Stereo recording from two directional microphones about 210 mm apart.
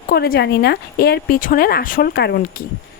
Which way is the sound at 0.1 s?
50° left (ahead or behind).